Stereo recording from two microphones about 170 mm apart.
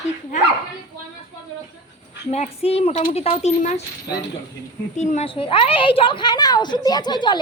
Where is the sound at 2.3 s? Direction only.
35° left (ahead or behind).